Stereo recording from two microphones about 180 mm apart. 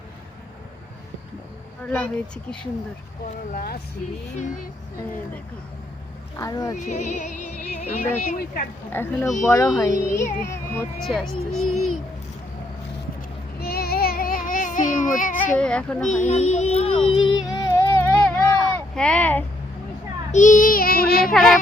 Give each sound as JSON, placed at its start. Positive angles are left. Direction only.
{"t": 1.8, "sound": "speech", "side_deg": 5}
{"t": 3.2, "sound": "child singing", "side_deg": 55}
{"t": 6.3, "sound": "speech", "side_deg": 20}
{"t": 6.7, "sound": "speech", "side_deg": 45}
{"t": 8.9, "sound": "speech", "side_deg": 10}
{"t": 9.8, "sound": "speech", "side_deg": 15}
{"t": 11.0, "sound": "speech", "side_deg": 0}
{"t": 13.6, "sound": "child singing", "side_deg": 60}
{"t": 15.5, "sound": "speech", "side_deg": 5}
{"t": 16.0, "sound": "music", "side_deg": 40}
{"t": 17.5, "sound": "a sound", "side_deg": 15}
{"t": 18.7, "sound": "speech", "side_deg": 5}
{"t": 20.3, "sound": "child singing", "side_deg": 45}